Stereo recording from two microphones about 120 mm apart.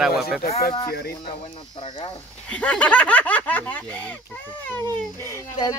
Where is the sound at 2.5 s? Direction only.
10° left (ahead or behind).